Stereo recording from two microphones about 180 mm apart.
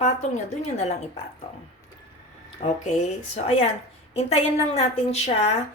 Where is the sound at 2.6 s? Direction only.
40° left (ahead or behind).